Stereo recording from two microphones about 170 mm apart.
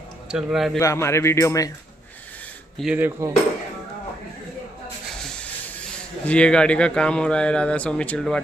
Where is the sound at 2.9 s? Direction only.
10° right (ahead or behind).